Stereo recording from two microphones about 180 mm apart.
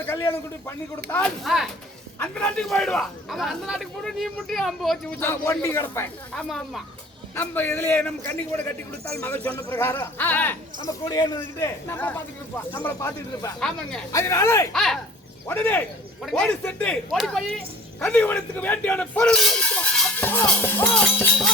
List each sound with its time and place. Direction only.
0.0 s a man's voice: 10° left (ahead or behind)
5.2 s speech: 15° left (ahead or behind)
10.8 s a man's voice: 25° left (ahead or behind)
11.3 s speech: 10° left (ahead or behind)
13.6 s a man's voice: 5° left (ahead or behind)
14.1 s speech: 15° left (ahead or behind)
14.7 s a man's voice: centre (ahead or behind)